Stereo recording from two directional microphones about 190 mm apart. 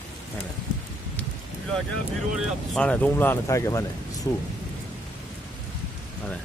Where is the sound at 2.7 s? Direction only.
5° left (ahead or behind).